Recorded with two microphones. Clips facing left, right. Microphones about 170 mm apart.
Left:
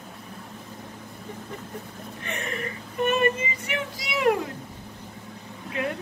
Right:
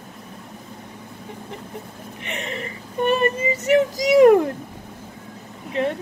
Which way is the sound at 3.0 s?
35° right (ahead or behind).